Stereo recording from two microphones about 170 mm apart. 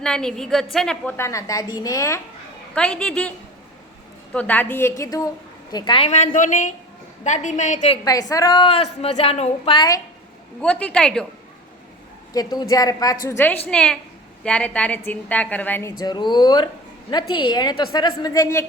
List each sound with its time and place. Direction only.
0.0 s a woman's voice: 5° left (ahead or behind)
1.1 s a woman's voice: 15° left (ahead or behind)
2.7 s a woman's voice: 5° left (ahead or behind)
4.4 s a woman's voice: 10° left (ahead or behind); by 6.1 s 25° left (ahead or behind)
6.1 s speech: 45° left (ahead or behind)
8.0 s a woman's voice: 20° left (ahead or behind)
8.7 s a woman's voice: 35° left (ahead or behind)
10.6 s a woman's voice: 5° left (ahead or behind)
12.5 s a woman's voice: 20° left (ahead or behind)
16.0 s a woman's voice: 25° left (ahead or behind)